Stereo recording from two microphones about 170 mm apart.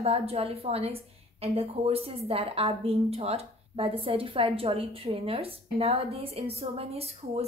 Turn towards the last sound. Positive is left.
turn(degrees=-35)  # may be behind; listen again after turning